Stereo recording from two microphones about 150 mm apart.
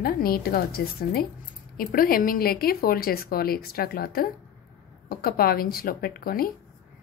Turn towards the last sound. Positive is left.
turn(degrees=75)  # may be behind; listen again after turning